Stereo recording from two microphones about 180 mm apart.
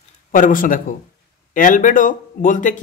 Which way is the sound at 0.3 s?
50° left (ahead or behind).